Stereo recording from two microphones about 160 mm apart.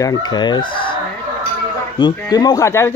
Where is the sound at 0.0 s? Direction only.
25° left (ahead or behind).